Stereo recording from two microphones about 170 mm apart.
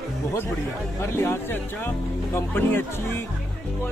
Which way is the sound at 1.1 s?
15° left (ahead or behind).